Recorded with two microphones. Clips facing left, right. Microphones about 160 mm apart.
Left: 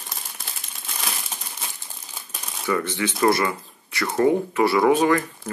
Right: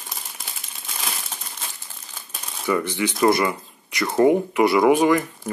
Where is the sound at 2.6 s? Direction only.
15° right (ahead or behind).